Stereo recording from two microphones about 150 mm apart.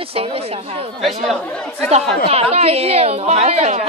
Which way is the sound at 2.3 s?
45° right (ahead or behind).